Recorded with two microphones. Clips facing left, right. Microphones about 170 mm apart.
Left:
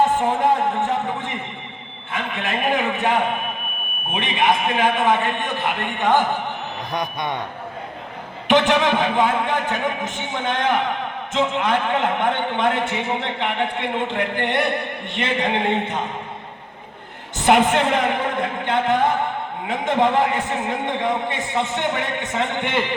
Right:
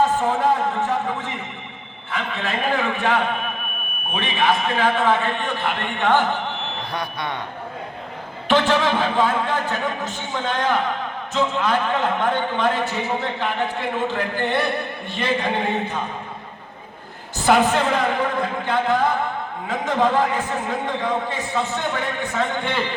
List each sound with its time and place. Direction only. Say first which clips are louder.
0.0 s a man's voice: left 1 dB; 20° left (ahead or behind)
2.4 s a man's voice: left 1 dB; 20° left (ahead or behind)
8.4 s a man's voice: left 2 dB; 20° left (ahead or behind)
17.4 s a man's voice: left 1 dB; 20° left (ahead or behind)